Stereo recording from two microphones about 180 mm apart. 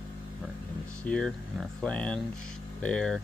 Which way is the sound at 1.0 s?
5° left (ahead or behind).